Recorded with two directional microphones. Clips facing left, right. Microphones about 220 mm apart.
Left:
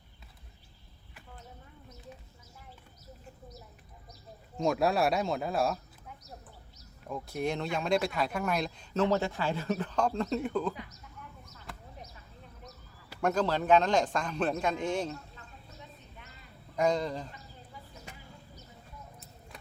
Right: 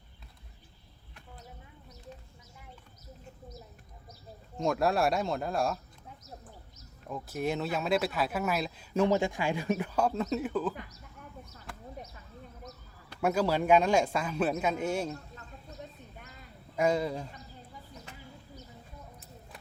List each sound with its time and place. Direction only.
4.5 s speech: centre (ahead or behind)
7.1 s speech: 5° right (ahead or behind)
13.2 s a man's voice: 10° right (ahead or behind)
15.1 s a sound: 45° right (ahead or behind)
16.7 s a man's voice: 5° right (ahead or behind)